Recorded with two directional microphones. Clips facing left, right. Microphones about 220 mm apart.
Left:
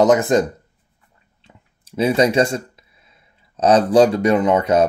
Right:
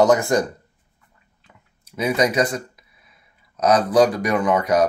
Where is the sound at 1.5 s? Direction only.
30° left (ahead or behind).